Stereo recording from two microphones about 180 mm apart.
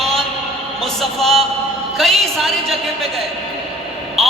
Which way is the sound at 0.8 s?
Centre (ahead or behind).